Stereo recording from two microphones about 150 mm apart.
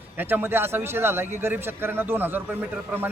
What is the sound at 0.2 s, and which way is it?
Speech, 15° right (ahead or behind).